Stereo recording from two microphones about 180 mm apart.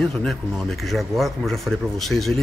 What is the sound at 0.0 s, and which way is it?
Speech, 5° left (ahead or behind).